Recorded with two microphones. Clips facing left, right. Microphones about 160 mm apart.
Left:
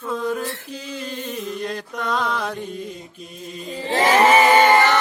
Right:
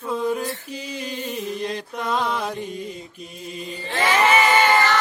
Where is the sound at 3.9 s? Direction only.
35° left (ahead or behind).